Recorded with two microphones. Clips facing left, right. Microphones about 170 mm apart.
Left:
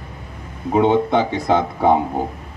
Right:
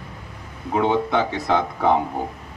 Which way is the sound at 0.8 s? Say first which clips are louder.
Left 5 dB; 25° left (ahead or behind).